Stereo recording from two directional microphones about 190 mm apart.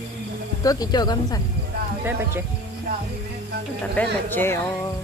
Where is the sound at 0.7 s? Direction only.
20° left (ahead or behind).